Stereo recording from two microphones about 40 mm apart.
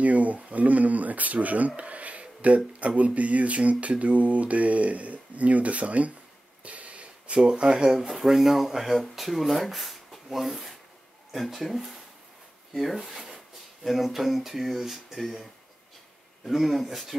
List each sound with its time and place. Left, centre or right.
0.0 s speech: right
6.6 s a sound: right
7.3 s speech: right; by 15.4 s centre
16.4 s speech: centre